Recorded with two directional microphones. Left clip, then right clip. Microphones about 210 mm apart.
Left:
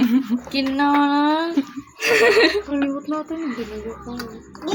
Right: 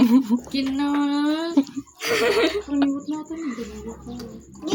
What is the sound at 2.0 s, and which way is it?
Speech, 15° right (ahead or behind).